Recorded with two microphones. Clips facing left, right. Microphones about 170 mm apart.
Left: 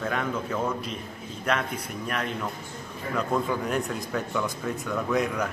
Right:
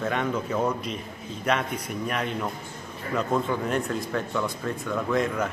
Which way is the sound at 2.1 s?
5° right (ahead or behind).